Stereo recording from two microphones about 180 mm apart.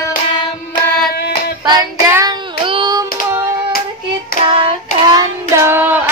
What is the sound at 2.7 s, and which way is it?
Hands, 25° right (ahead or behind).